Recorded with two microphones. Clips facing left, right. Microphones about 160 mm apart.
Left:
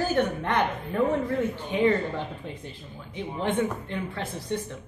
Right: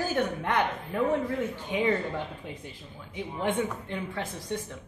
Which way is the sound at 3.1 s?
15° right (ahead or behind).